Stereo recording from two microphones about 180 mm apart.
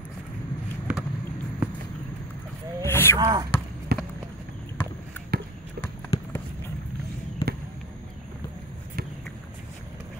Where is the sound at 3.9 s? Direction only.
60° right (ahead or behind).